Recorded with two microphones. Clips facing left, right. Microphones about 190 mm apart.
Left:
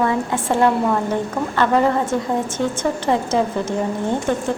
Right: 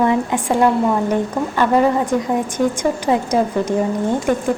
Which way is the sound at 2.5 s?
15° right (ahead or behind).